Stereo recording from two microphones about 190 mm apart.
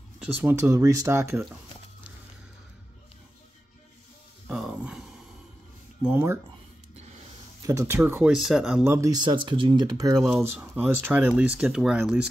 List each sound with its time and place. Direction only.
0.2 s speech: 5° right (ahead or behind)
0.6 s speech: 15° right (ahead or behind)
4.5 s a sound: centre (ahead or behind)
6.0 s speech: 10° right (ahead or behind)
7.6 s speech: 15° right (ahead or behind)
8.3 s speech: centre (ahead or behind); by 10.2 s 20° right (ahead or behind)
10.2 s speech: 5° right (ahead or behind)